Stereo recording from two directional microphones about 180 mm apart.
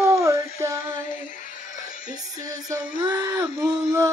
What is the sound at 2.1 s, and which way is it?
Music, 20° right (ahead or behind).